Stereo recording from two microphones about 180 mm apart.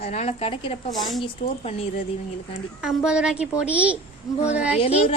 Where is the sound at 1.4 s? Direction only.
35° left (ahead or behind).